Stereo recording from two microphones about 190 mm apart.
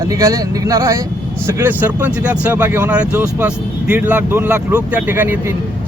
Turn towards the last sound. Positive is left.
turn(degrees=-10)  # may be behind; listen again after turning